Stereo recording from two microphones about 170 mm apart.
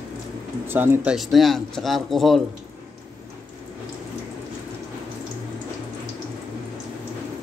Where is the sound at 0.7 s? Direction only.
10° right (ahead or behind).